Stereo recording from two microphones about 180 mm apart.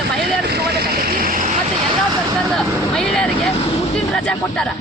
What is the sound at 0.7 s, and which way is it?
Vehicle, 55° right (ahead or behind).